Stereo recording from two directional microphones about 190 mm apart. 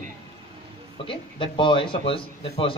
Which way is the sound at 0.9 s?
25° left (ahead or behind).